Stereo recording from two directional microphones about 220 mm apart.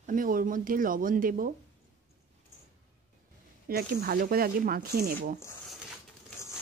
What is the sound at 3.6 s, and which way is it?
Speech, 45° right (ahead or behind).